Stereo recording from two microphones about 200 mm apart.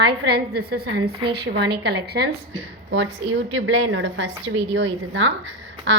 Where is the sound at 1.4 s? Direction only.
55° right (ahead or behind).